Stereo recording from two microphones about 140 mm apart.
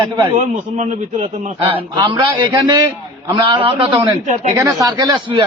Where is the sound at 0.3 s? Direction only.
55° right (ahead or behind).